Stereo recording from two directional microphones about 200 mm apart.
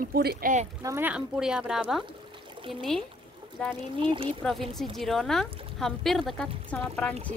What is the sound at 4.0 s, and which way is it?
Speech, 25° right (ahead or behind).